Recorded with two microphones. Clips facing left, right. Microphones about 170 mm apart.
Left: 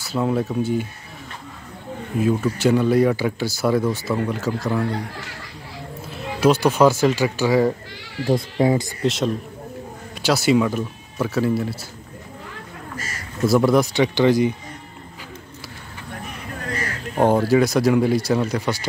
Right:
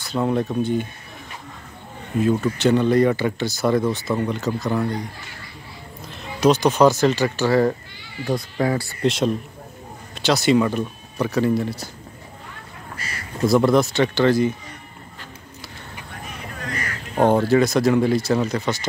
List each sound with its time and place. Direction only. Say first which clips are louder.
0.0 s speech: even; 5° left (ahead or behind)
2.1 s speech: right 1 dB; 5° left (ahead or behind)
6.0 s speech: even; 5° left (ahead or behind)
8.2 s speech: left 4 dB; 75° left (ahead or behind)
8.5 s speech: left 3 dB; 20° left (ahead or behind)
9.0 s speech: right 1 dB; centre (ahead or behind)
13.5 s speech: even; 10° left (ahead or behind)
17.2 s speech: even; 10° left (ahead or behind)